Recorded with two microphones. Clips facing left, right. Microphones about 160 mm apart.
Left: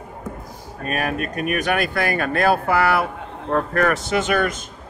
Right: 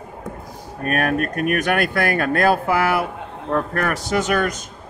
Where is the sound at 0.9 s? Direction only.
55° right (ahead or behind).